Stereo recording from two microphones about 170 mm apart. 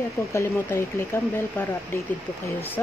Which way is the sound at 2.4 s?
10° left (ahead or behind).